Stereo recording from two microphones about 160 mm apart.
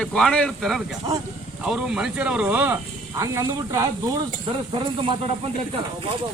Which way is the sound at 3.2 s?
20° right (ahead or behind).